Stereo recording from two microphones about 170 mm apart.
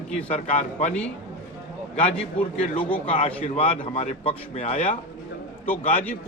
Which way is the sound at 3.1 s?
40° left (ahead or behind).